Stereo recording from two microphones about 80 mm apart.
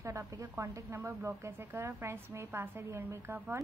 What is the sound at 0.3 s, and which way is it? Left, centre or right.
A woman's voice, right.